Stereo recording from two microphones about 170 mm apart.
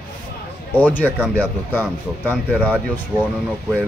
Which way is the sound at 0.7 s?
10° left (ahead or behind).